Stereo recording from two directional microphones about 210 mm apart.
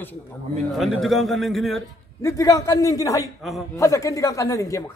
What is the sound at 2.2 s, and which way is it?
A man's voice, 15° left (ahead or behind).